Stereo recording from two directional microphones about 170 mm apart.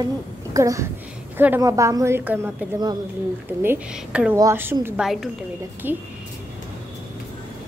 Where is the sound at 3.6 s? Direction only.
10° right (ahead or behind).